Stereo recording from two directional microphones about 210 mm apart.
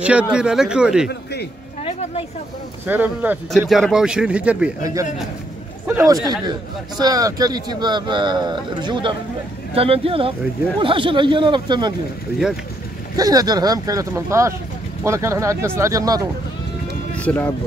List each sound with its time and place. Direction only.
0.0 s speech: 5° right (ahead or behind)
1.0 s a man's voice: 50° left (ahead or behind)
1.9 s a sound: 30° left (ahead or behind)
2.9 s speech: 10° right (ahead or behind)
5.9 s speech: 10° right (ahead or behind)
13.1 s speech: 15° right (ahead or behind)
17.2 s speech: 10° left (ahead or behind)